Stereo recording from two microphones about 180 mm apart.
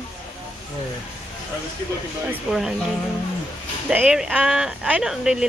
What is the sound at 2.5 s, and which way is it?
Speech, 5° right (ahead or behind).